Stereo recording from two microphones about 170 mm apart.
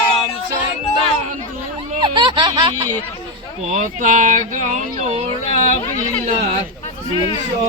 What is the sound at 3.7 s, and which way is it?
Speech, 45° right (ahead or behind).